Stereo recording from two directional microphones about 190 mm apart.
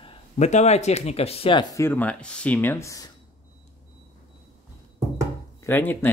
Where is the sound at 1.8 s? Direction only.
10° left (ahead or behind).